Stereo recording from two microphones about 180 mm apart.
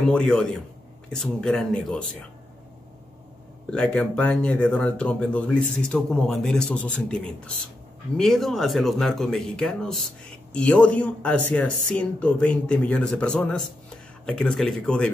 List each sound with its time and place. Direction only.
0.0 s speech: 5° left (ahead or behind)
3.7 s speech: 5° left (ahead or behind)